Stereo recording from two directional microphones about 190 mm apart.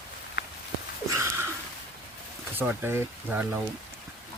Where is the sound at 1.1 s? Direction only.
15° right (ahead or behind).